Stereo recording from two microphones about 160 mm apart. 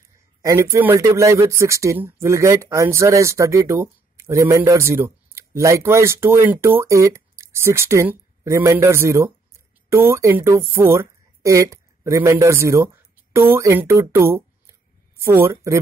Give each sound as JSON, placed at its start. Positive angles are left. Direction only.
{"t": 0.4, "sound": "speech", "side_deg": -20}